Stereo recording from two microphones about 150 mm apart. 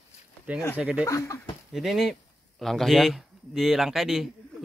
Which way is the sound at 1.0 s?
20° left (ahead or behind).